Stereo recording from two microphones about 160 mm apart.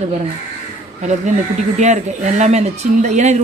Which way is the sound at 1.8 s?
45° right (ahead or behind).